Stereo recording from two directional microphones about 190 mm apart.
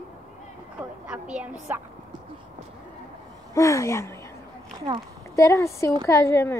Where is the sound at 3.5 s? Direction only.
15° left (ahead or behind).